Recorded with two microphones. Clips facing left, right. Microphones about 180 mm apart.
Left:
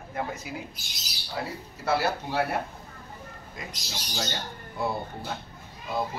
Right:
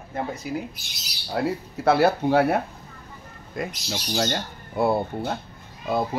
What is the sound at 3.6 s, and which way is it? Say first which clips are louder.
Speech: right 10 dB; 55° right (ahead or behind).